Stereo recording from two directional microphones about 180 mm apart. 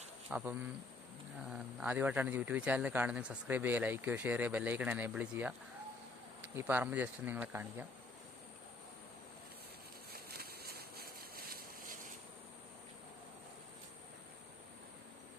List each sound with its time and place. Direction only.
0.3 s speech: 5° right (ahead or behind)
1.5 s speech: 10° right (ahead or behind)
10.2 s a sound: 60° right (ahead or behind)